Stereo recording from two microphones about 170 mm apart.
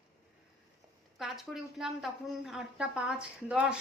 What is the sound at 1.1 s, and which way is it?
Speech, centre (ahead or behind).